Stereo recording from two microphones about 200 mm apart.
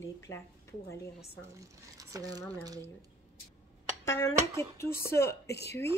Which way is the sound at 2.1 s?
15° right (ahead or behind).